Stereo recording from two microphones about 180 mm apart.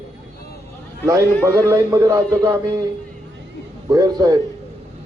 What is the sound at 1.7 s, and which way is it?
Speech, 15° right (ahead or behind).